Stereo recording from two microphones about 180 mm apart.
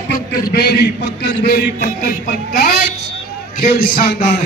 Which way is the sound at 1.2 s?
65° left (ahead or behind).